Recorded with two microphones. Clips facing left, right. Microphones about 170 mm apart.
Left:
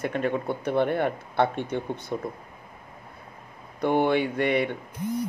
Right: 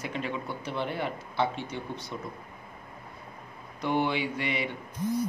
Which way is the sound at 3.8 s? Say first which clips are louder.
Left 6 dB; 55° left (ahead or behind).